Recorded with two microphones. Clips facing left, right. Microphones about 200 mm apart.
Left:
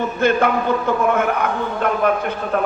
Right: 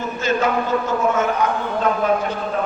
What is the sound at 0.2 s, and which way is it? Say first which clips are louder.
A man's voice: left 2 dB; 60° left (ahead or behind).